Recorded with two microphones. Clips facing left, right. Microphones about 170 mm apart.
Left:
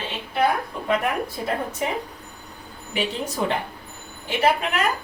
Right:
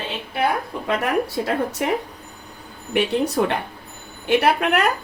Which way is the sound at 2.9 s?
65° right (ahead or behind).